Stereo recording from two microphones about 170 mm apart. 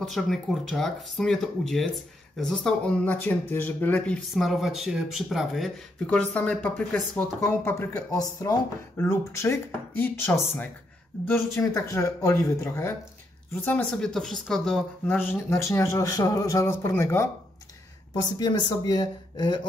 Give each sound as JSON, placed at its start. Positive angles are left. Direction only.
{"t": 0.0, "sound": "speech", "side_deg": 0}
{"t": 11.5, "sound": "speech", "side_deg": 15}